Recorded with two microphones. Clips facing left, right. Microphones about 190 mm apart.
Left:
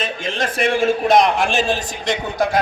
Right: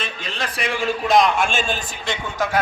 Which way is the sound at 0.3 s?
50° left (ahead or behind).